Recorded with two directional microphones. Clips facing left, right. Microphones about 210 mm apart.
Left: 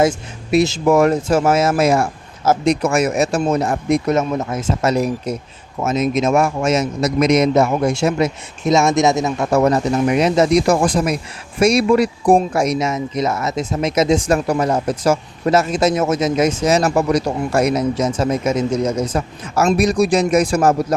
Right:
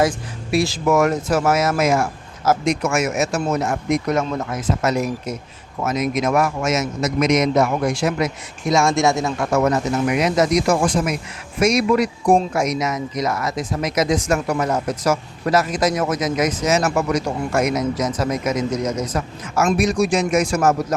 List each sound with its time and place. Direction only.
0.0 s speech: 20° left (ahead or behind)
9.5 s speech: 30° left (ahead or behind)